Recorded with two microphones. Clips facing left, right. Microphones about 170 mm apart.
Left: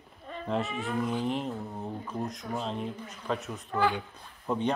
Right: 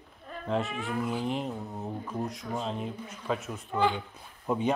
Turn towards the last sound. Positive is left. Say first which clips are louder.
# right 1 dB
turn(degrees=-5)  # may be behind; listen again after turning